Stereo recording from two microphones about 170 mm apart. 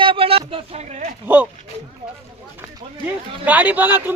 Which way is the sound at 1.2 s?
10° right (ahead or behind).